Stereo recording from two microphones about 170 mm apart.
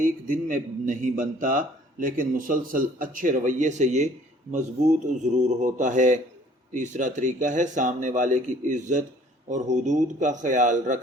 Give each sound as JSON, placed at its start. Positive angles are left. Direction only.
{"t": 0.0, "sound": "a man's voice", "side_deg": -55}